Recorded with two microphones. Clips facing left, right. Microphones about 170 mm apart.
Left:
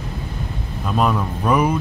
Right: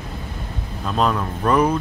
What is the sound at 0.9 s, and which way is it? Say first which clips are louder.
Speech: left 1 dB; 5° left (ahead or behind).